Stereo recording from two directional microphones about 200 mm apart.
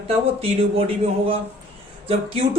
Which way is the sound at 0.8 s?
30° right (ahead or behind).